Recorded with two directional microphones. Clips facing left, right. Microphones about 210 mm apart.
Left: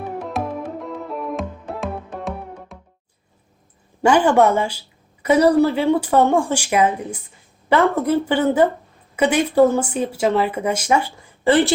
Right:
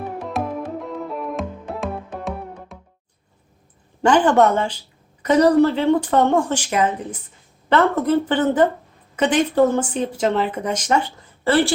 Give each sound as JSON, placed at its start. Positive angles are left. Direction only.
{"t": 0.0, "sound": "music", "side_deg": 0}
{"t": 4.0, "sound": "speech", "side_deg": 10}